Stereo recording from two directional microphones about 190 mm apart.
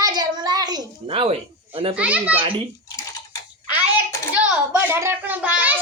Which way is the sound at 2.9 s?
20° left (ahead or behind).